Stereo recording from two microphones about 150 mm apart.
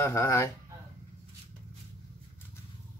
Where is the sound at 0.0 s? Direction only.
20° left (ahead or behind).